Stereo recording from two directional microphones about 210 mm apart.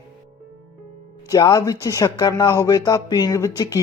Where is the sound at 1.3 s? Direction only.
20° left (ahead or behind).